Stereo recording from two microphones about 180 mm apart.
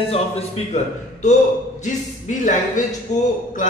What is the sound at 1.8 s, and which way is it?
Speech, 45° left (ahead or behind).